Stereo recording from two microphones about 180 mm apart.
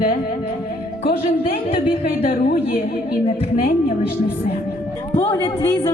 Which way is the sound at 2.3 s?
45° left (ahead or behind).